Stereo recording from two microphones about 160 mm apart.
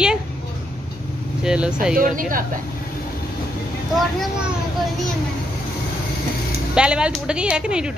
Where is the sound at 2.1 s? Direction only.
60° right (ahead or behind).